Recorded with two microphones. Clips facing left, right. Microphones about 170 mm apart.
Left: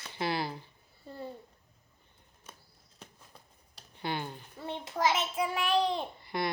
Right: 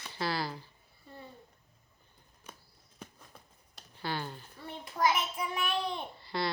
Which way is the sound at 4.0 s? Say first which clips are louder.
Left 1 dB; 20° left (ahead or behind).